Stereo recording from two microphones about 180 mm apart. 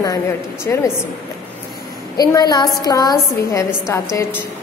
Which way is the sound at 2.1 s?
20° left (ahead or behind).